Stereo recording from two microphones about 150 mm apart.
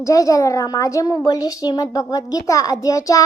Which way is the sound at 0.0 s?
20° left (ahead or behind).